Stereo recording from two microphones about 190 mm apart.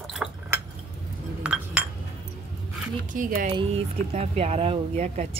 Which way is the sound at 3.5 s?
35° right (ahead or behind).